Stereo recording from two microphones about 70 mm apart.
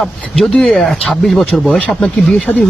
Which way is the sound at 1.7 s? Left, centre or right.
Centre.